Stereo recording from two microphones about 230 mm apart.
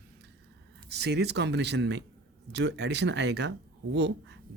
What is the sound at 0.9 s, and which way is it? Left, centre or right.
Speech, right.